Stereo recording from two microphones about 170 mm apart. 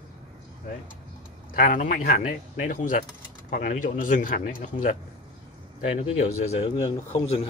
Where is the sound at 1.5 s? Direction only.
55° left (ahead or behind).